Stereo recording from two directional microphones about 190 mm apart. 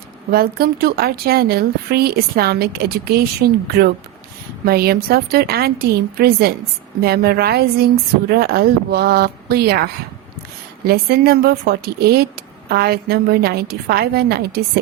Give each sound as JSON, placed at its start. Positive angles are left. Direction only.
{"t": 0.3, "sound": "a woman's voice", "side_deg": -50}
{"t": 4.6, "sound": "a woman's voice", "side_deg": -55}